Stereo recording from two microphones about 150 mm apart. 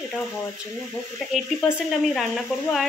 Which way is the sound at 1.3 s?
Centre (ahead or behind).